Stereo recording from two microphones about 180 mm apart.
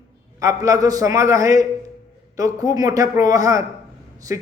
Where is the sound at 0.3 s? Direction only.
20° right (ahead or behind).